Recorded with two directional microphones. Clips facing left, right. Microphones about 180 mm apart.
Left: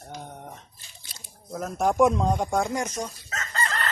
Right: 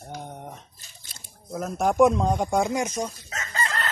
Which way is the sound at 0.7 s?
45° right (ahead or behind).